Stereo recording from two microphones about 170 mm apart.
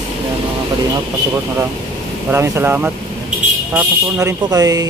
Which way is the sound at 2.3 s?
15° right (ahead or behind).